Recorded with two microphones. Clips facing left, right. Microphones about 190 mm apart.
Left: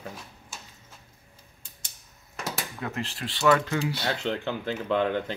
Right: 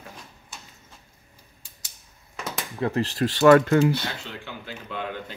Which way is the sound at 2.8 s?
35° right (ahead or behind).